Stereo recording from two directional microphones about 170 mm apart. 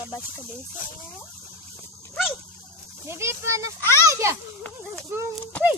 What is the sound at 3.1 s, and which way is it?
A child's voice, 15° right (ahead or behind).